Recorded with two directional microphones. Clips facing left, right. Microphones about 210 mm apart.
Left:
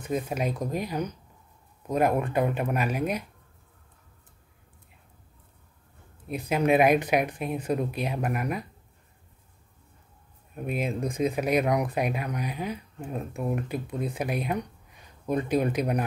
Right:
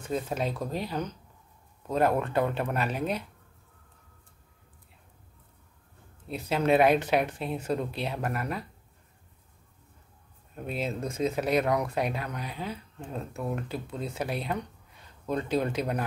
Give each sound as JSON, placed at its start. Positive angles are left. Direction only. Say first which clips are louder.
{"t": 0.0, "sound": "speech", "louder": "left 2 dB", "side_deg": 15}
{"t": 6.2, "sound": "speech", "louder": "left 2 dB", "side_deg": 15}
{"t": 10.5, "sound": "speech", "louder": "left 3 dB", "side_deg": 15}